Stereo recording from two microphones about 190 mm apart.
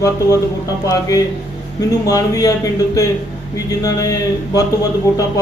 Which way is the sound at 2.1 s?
20° left (ahead or behind).